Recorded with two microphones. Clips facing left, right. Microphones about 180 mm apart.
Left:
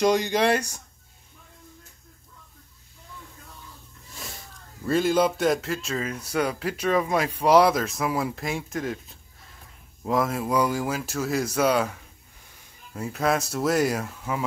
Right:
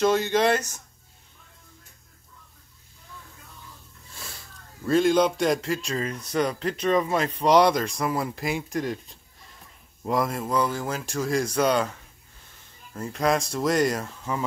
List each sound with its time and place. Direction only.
0.0 s speech: 15° left (ahead or behind)
4.1 s a sound: 20° left (ahead or behind)
4.8 s speech: 5° left (ahead or behind)